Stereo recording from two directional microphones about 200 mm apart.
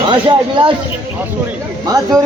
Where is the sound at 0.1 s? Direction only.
25° right (ahead or behind).